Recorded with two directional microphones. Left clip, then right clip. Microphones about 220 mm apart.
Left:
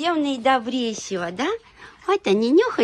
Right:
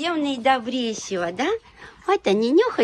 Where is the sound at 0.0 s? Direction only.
10° left (ahead or behind).